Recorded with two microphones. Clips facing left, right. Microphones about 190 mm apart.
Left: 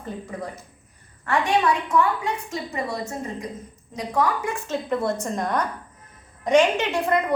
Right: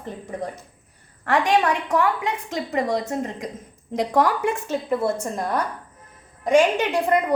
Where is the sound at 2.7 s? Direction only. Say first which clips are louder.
Right 7 dB; 90° right.